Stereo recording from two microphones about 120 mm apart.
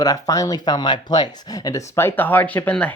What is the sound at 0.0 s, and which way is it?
Speech, 30° left (ahead or behind).